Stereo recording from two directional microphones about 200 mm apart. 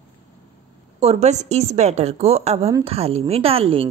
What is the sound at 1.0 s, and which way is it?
A woman's voice, 30° right (ahead or behind).